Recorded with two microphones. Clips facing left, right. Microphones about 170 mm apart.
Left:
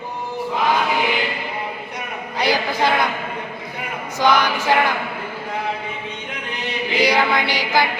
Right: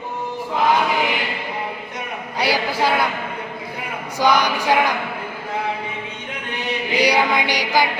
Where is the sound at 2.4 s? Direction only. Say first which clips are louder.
Left 1 dB; 10° right (ahead or behind).